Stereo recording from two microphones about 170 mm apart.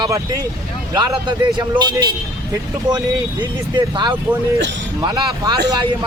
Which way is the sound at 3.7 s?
25° right (ahead or behind).